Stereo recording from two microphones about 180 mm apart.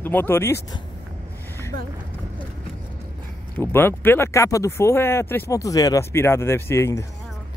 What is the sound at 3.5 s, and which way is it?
Speech, 10° left (ahead or behind).